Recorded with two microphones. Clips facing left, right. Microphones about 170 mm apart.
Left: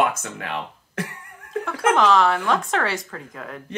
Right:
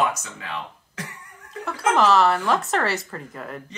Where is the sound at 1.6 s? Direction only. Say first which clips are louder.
Left 1 dB; 5° right (ahead or behind).